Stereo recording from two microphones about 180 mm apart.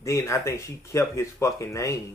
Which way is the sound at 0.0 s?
15° left (ahead or behind).